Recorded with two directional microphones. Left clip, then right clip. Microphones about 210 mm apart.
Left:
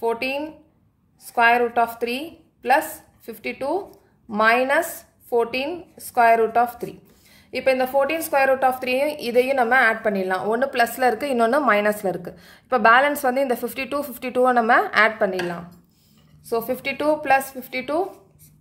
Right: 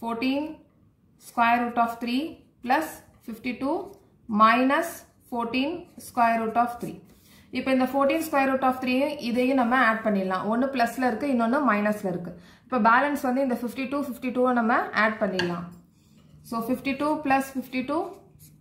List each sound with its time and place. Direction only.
1.3 s a woman's voice: 50° left (ahead or behind)
16.4 s a woman's voice: 50° left (ahead or behind)